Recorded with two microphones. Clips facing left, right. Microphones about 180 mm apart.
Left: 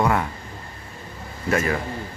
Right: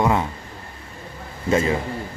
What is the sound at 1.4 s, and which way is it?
Speech, 20° right (ahead or behind).